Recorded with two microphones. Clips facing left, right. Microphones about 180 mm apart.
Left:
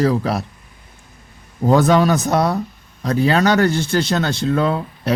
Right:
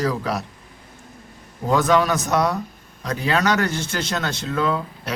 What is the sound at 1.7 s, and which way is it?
Speech, 30° left (ahead or behind).